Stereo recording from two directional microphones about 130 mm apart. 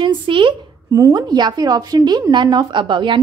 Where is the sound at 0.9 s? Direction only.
30° right (ahead or behind).